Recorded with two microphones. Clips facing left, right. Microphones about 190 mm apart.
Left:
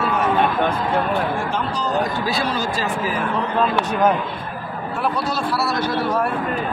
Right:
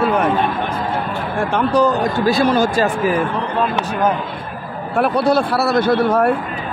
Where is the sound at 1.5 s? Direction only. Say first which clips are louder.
Right 7 dB; 60° right (ahead or behind).